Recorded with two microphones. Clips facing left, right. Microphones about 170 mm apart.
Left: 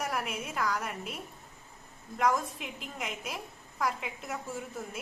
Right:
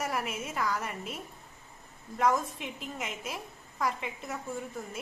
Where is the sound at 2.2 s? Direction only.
Centre (ahead or behind).